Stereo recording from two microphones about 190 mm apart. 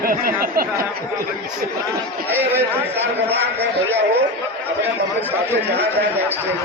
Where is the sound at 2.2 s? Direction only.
10° right (ahead or behind).